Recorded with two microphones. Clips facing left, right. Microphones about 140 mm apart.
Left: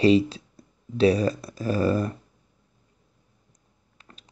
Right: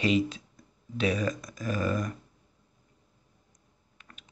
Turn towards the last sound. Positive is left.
turn(degrees=35)  # may be behind; listen again after turning